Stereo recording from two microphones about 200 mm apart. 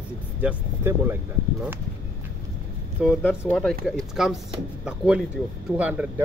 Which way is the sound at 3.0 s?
Centre (ahead or behind).